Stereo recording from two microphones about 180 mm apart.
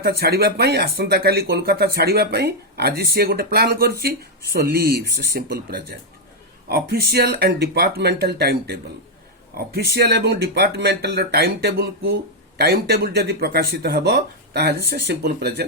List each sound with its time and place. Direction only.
0.0 s speech: 60° right (ahead or behind)
6.7 s speech: 60° right (ahead or behind)